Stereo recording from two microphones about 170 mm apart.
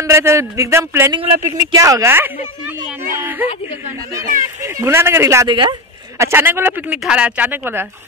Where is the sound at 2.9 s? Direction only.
10° right (ahead or behind).